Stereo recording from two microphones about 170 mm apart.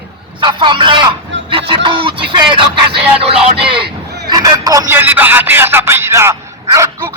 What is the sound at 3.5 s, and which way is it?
Speech, 30° right (ahead or behind).